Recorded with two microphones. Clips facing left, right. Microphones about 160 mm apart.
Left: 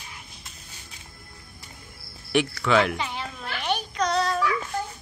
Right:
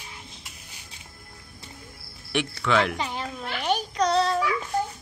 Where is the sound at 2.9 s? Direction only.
40° right (ahead or behind).